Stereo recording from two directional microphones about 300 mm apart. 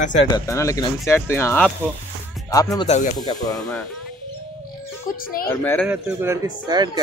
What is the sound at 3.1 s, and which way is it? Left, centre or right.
Speech, centre.